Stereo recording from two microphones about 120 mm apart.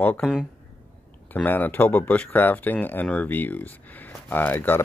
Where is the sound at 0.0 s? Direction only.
15° left (ahead or behind).